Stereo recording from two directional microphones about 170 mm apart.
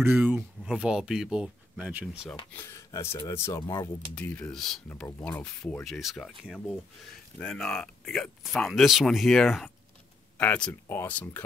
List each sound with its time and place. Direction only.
0.0 s speech: 10° right (ahead or behind)
2.5 s speech: 15° left (ahead or behind)